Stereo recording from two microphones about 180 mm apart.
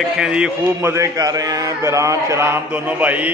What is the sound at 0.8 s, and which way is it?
A man's voice, 15° right (ahead or behind).